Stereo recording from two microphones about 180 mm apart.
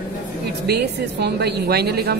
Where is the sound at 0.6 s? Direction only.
65° right (ahead or behind).